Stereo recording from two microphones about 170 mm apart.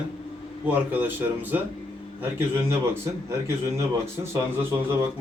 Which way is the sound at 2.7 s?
15° right (ahead or behind).